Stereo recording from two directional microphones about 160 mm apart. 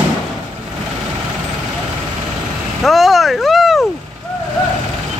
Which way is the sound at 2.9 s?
Centre (ahead or behind).